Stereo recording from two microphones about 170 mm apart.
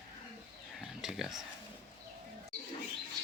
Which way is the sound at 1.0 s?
Centre (ahead or behind).